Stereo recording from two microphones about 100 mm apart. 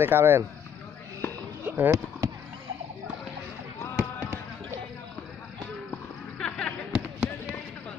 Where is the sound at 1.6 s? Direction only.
25° right (ahead or behind).